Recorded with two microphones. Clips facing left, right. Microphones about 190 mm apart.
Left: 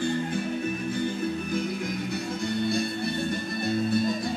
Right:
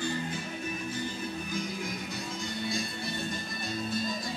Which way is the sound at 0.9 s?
60° left (ahead or behind).